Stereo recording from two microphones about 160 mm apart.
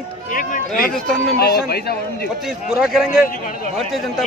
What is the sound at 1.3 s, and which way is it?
Speech, 90° left.